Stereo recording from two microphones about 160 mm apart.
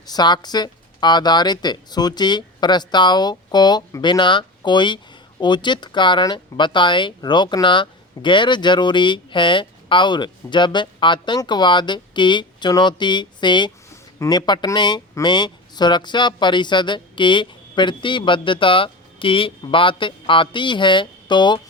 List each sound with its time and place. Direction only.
0.0 s speech: 25° left (ahead or behind)